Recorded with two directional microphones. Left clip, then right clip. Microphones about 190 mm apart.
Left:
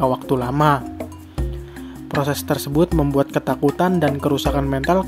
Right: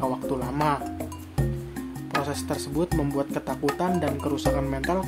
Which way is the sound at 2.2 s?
35° left (ahead or behind).